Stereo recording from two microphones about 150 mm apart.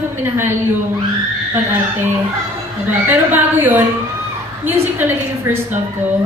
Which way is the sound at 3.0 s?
15° right (ahead or behind).